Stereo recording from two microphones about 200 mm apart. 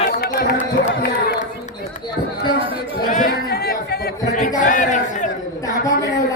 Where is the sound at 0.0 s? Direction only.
45° left (ahead or behind).